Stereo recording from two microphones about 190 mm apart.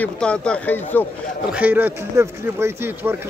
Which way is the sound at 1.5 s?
10° right (ahead or behind).